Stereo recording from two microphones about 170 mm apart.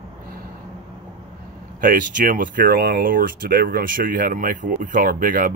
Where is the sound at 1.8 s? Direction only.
50° right (ahead or behind).